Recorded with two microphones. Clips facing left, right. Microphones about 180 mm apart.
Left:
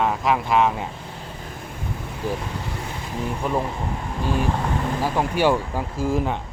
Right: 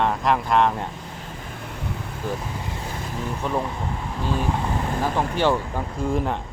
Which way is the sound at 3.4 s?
10° left (ahead or behind).